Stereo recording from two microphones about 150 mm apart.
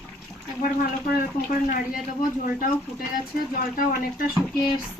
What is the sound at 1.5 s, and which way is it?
Speech, 65° left (ahead or behind).